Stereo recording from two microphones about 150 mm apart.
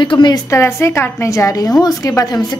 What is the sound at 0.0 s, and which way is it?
A woman's voice, 30° left (ahead or behind).